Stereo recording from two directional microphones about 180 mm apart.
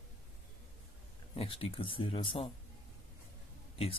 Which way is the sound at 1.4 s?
30° left (ahead or behind).